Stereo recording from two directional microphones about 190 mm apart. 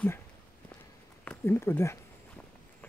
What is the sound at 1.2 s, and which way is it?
Speech, 10° left (ahead or behind).